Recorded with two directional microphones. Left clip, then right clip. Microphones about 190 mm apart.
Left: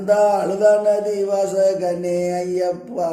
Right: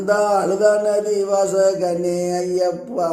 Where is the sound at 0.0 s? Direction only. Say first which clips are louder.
Left 1 dB; 5° left (ahead or behind).